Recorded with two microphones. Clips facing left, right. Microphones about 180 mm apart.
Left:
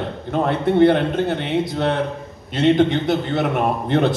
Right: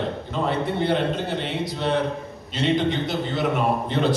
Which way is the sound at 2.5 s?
55° left (ahead or behind).